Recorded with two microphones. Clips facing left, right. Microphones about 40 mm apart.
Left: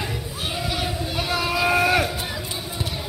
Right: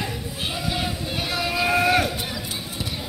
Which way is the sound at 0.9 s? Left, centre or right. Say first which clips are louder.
Left 2 dB; left.